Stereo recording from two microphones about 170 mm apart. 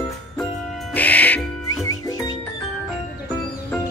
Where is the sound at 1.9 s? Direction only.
20° left (ahead or behind).